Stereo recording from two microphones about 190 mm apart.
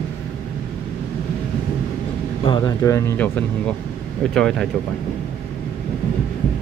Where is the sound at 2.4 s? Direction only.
25° left (ahead or behind); by 4.6 s 5° left (ahead or behind).